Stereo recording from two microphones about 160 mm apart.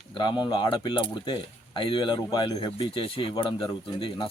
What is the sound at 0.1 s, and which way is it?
Speech, 30° left (ahead or behind).